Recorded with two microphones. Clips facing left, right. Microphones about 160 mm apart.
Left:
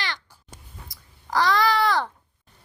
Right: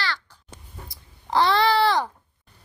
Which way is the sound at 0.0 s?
15° left (ahead or behind).